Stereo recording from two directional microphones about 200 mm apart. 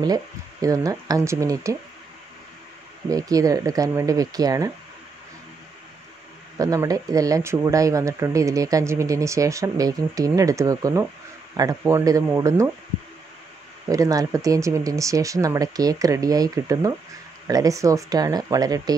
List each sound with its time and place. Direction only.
0.0 s speech: 20° right (ahead or behind)
3.1 s speech: 15° right (ahead or behind)
6.6 s speech: 15° right (ahead or behind)
13.8 s speech: 15° right (ahead or behind)